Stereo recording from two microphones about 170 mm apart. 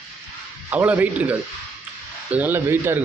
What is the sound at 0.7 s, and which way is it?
A man's voice, 10° right (ahead or behind).